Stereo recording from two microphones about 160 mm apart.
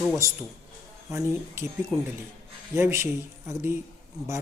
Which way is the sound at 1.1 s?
15° right (ahead or behind).